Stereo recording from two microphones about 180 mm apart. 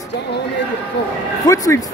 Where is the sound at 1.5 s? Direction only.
20° left (ahead or behind).